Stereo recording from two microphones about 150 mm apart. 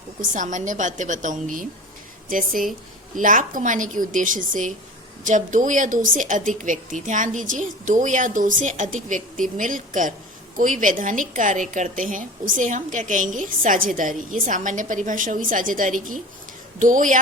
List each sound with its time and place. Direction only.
0.2 s a woman's voice: 55° right (ahead or behind)
3.2 s a woman's voice: 60° right (ahead or behind)